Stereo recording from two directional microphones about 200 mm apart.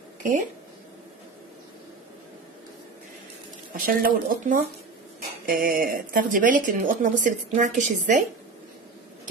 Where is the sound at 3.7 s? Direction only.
45° right (ahead or behind).